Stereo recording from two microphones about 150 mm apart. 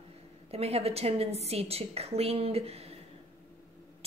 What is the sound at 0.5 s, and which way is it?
A woman's voice, 40° right (ahead or behind).